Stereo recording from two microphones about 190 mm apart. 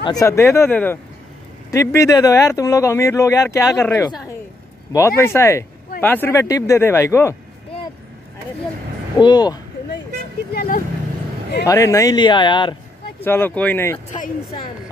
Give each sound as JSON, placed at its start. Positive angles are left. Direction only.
{"t": 0.0, "sound": "speech", "side_deg": 20}
{"t": 9.2, "sound": "speech", "side_deg": 20}
{"t": 10.5, "sound": "speech", "side_deg": 55}
{"t": 11.6, "sound": "speech", "side_deg": 15}
{"t": 13.2, "sound": "speech", "side_deg": 10}